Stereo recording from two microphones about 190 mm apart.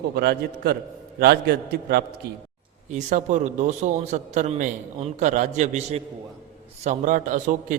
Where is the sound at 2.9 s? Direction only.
40° right (ahead or behind).